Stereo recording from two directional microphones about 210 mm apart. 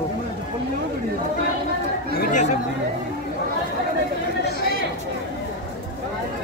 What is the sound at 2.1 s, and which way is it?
Speech, 40° left (ahead or behind).